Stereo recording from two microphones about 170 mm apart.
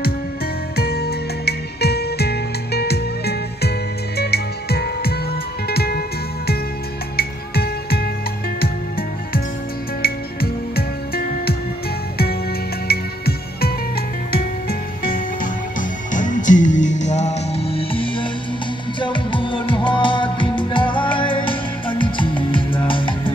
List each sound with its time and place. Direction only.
0.7 s music: 70° left (ahead or behind)
10.0 s music: 65° left (ahead or behind)
12.8 s music: 65° left (ahead or behind); by 23.3 s 30° left (ahead or behind)